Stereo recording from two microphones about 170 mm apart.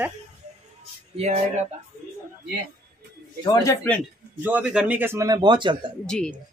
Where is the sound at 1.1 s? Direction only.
40° right (ahead or behind).